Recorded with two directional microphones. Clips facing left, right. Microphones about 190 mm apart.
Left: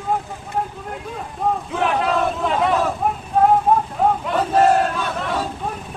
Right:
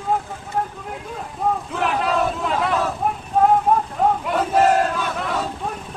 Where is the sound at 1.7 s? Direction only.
Centre (ahead or behind).